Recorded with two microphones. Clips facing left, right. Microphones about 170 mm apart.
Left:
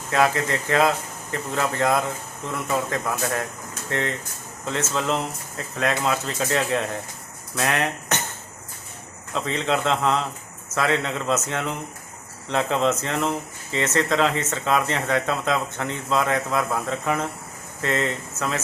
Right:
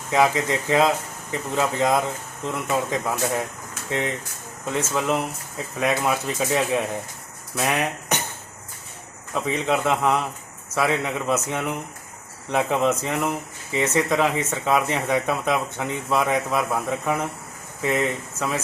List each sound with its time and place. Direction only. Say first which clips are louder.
0.1 s speech: right 1 dB; 15° right (ahead or behind)
9.3 s speech: right 1 dB; 10° right (ahead or behind)